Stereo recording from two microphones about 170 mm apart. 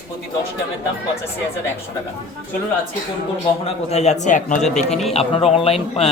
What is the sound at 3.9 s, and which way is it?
A man's voice, 40° left (ahead or behind).